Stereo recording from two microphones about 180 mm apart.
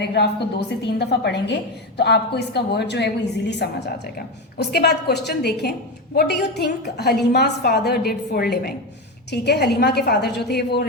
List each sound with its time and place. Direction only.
0.0 s a woman's voice: 70° left (ahead or behind)